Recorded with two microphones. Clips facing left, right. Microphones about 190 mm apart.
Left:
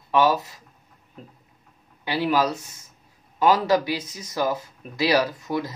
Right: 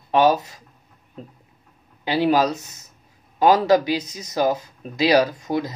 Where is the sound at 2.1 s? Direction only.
25° right (ahead or behind).